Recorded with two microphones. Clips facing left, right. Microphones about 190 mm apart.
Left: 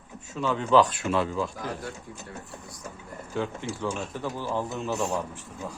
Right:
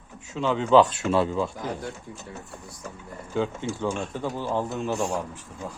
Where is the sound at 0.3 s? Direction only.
20° right (ahead or behind).